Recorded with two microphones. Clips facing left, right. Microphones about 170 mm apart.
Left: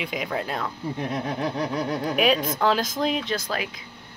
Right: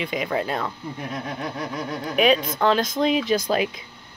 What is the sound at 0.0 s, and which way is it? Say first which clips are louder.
Speech: right 3 dB; centre (ahead or behind).